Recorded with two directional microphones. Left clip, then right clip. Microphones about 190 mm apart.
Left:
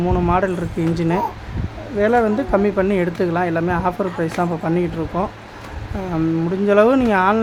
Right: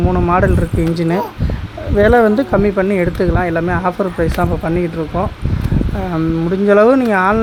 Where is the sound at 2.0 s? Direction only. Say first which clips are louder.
Right 6 dB; 30° right (ahead or behind); by 5.2 s 15° right (ahead or behind).